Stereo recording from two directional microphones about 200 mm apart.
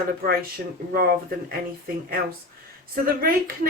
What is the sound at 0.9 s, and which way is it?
Speech, 45° right (ahead or behind).